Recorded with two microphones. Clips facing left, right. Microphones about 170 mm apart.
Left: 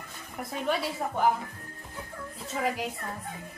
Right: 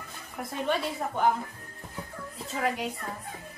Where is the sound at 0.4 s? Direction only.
Centre (ahead or behind).